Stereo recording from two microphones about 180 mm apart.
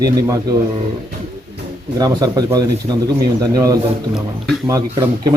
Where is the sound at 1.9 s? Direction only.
20° right (ahead or behind).